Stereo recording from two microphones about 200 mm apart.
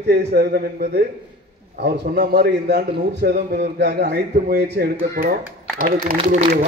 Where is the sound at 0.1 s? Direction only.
55° right (ahead or behind).